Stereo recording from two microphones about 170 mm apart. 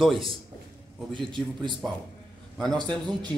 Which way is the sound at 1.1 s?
30° right (ahead or behind).